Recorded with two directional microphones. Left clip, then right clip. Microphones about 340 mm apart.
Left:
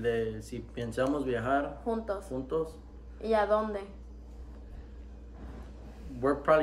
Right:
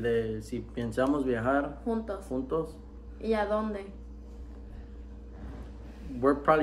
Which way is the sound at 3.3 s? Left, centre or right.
Centre.